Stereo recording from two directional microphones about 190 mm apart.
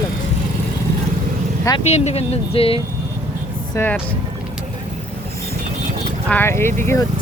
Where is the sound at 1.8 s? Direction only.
35° left (ahead or behind).